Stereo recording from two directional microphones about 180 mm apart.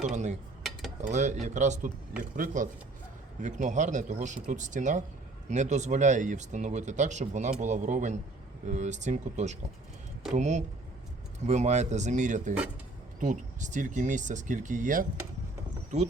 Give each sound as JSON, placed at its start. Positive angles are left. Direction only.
{"t": 0.1, "sound": "cutlery", "side_deg": -40}
{"t": 1.0, "sound": "speech", "side_deg": -40}